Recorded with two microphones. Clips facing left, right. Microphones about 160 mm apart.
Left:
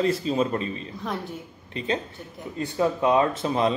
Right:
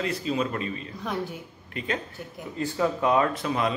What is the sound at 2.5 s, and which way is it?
Speech, 25° left (ahead or behind).